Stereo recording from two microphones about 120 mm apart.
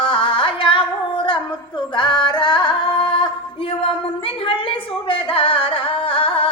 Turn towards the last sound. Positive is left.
turn(degrees=45)  # may be behind; listen again after turning